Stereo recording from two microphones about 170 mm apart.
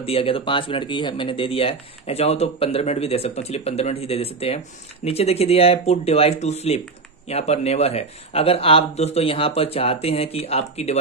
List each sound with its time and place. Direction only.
0.0 s speech: 35° left (ahead or behind)